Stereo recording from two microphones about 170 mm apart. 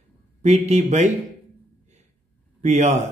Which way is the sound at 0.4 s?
40° right (ahead or behind).